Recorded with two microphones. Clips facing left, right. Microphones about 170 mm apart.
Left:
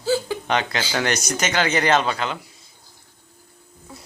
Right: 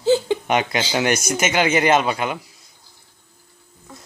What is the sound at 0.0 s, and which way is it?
Chuckle, 20° right (ahead or behind).